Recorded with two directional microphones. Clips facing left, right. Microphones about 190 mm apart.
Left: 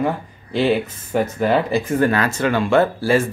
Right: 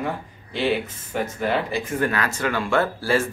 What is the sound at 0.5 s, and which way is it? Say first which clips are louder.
Speech: left 5 dB; 40° left (ahead or behind).